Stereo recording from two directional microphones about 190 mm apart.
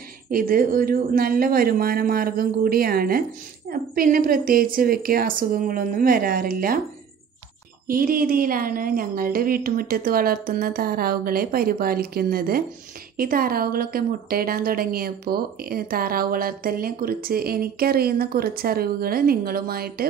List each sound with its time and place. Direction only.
0.3 s speech: 45° right (ahead or behind)
7.8 s speech: 50° right (ahead or behind)